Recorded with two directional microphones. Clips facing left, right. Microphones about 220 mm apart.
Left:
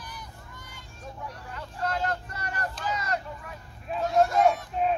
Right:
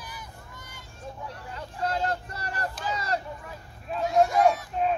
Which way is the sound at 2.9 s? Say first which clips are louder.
Right 2 dB; 30° right (ahead or behind).